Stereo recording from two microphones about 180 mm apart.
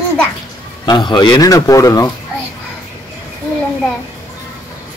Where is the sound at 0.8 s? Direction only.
25° left (ahead or behind).